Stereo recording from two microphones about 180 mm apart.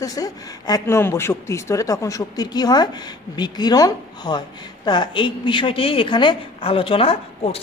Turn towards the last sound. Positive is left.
turn(degrees=30)  # may be behind; listen again after turning